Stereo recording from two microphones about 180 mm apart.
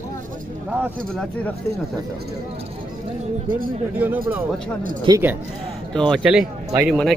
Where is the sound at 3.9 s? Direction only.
10° right (ahead or behind).